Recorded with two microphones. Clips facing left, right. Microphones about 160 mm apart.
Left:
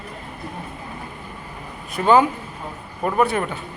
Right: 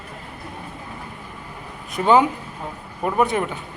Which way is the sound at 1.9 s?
20° right (ahead or behind).